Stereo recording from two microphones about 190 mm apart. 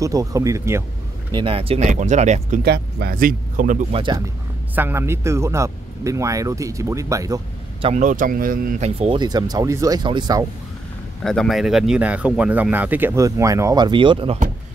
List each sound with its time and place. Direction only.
0.0 s speech: 15° right (ahead or behind)
1.3 s speech: 30° right (ahead or behind)
2.6 s speech: 55° right (ahead or behind)
3.9 s speech: 25° right (ahead or behind)
4.7 s speech: 10° right (ahead or behind)
7.8 s speech: 40° right (ahead or behind); by 10.4 s 25° right (ahead or behind)
11.2 s speech: centre (ahead or behind); by 14.4 s 30° right (ahead or behind)